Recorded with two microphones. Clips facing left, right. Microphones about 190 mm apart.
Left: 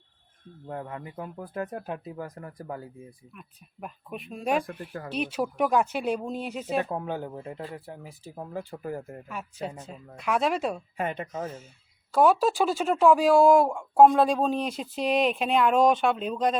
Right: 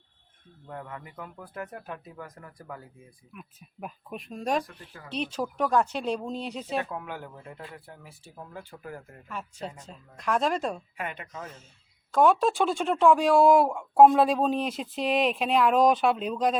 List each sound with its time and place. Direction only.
0.7 s speech: 30° left (ahead or behind)
3.3 s speech: 5° right (ahead or behind)
4.6 s speech: 55° left (ahead or behind)
5.1 s speech: 10° left (ahead or behind)
6.8 s speech: 30° left (ahead or behind)
9.3 s speech: 5° left (ahead or behind)
10.9 s speech: 40° left (ahead or behind)
12.1 s speech: 5° left (ahead or behind)